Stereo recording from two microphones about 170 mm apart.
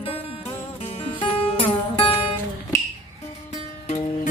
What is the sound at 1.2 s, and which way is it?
Music, 30° left (ahead or behind).